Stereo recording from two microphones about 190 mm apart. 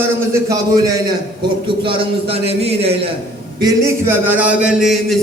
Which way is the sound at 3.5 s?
15° right (ahead or behind).